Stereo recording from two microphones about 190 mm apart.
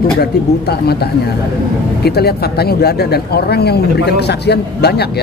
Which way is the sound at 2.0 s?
55° left (ahead or behind).